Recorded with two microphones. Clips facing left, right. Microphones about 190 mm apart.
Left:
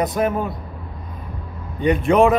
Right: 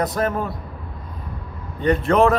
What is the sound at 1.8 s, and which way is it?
Speech, 15° left (ahead or behind).